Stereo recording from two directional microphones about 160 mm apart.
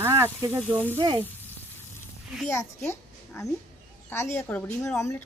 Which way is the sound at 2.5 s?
15° left (ahead or behind).